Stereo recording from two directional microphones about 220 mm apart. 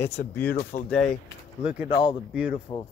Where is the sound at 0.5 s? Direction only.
45° left (ahead or behind).